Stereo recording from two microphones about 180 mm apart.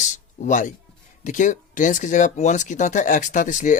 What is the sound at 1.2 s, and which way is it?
Speech, 45° left (ahead or behind).